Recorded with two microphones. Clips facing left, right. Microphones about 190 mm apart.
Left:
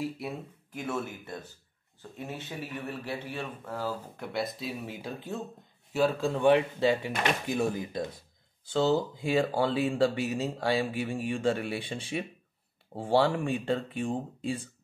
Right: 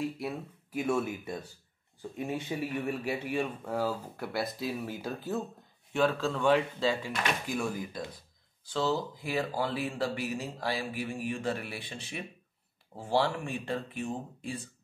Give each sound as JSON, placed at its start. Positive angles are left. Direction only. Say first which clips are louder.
{"t": 0.7, "sound": "a man's voice", "louder": "right 4 dB", "side_deg": -10}
{"t": 5.9, "sound": "speech", "louder": "left 1 dB", "side_deg": 10}
{"t": 8.6, "sound": "speech", "louder": "left 5 dB", "side_deg": 25}